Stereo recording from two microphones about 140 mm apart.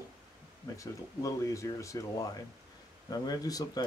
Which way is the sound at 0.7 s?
20° left (ahead or behind).